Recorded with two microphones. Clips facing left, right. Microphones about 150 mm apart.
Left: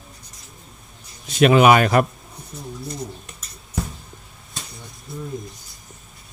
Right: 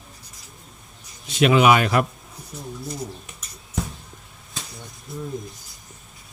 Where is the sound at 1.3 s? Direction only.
45° left (ahead or behind).